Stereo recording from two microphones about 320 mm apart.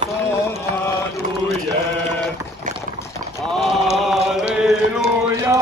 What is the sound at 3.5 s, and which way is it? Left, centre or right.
Chant, centre.